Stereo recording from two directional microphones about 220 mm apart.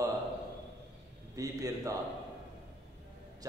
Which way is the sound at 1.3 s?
15° right (ahead or behind).